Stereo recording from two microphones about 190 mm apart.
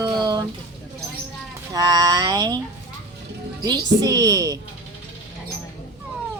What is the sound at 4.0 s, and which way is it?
Speech, 20° right (ahead or behind).